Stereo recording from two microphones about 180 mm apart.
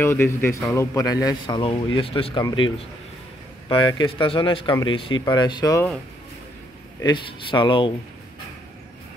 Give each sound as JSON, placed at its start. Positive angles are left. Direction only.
{"t": 0.0, "sound": "a man's voice", "side_deg": 15}
{"t": 7.0, "sound": "speech", "side_deg": 25}